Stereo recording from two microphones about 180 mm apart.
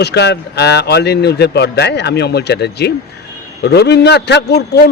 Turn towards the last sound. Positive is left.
turn(degrees=65)  # may be behind; listen again after turning